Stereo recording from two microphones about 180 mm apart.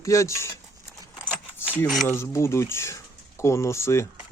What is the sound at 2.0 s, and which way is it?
Speech, 15° left (ahead or behind).